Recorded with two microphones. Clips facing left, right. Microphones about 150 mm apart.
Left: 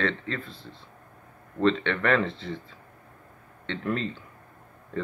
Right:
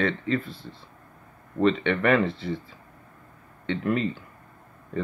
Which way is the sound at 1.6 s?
10° right (ahead or behind).